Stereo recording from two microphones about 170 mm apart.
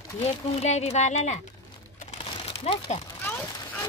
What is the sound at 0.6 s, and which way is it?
Speech, 40° left (ahead or behind).